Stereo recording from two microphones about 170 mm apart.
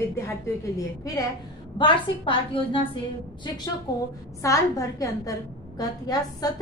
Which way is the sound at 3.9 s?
20° left (ahead or behind).